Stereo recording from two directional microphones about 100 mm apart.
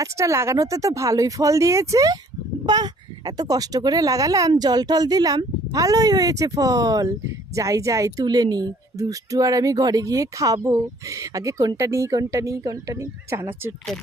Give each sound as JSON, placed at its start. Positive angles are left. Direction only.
{"t": 0.0, "sound": "speech", "side_deg": -30}